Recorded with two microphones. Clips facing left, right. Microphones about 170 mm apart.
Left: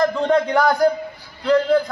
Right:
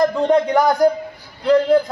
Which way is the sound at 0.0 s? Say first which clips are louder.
Right 2 dB; 15° right (ahead or behind).